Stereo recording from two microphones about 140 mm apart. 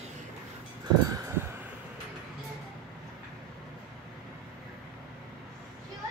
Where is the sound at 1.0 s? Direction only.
20° right (ahead or behind).